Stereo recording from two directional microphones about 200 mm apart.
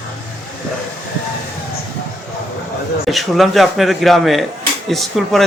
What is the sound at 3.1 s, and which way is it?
A man's voice, centre (ahead or behind).